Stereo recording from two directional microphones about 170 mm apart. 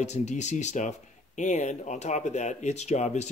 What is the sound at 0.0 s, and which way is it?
Speech, 45° left (ahead or behind).